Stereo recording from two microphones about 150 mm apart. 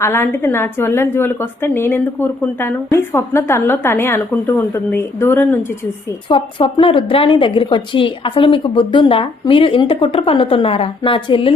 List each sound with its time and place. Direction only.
0.0 s a woman's voice: 15° left (ahead or behind)
6.2 s a woman's voice: 35° left (ahead or behind)